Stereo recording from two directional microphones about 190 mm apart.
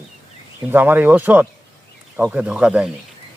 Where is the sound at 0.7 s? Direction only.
10° right (ahead or behind).